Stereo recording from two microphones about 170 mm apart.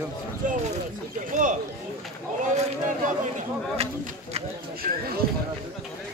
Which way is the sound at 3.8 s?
35° right (ahead or behind).